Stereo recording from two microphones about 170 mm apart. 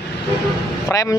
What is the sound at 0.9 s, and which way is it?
Speech, 20° left (ahead or behind).